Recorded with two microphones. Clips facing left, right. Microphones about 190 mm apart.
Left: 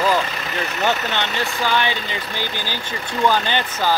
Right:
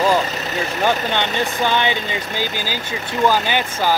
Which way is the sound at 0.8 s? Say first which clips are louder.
Right 2 dB; 15° right (ahead or behind).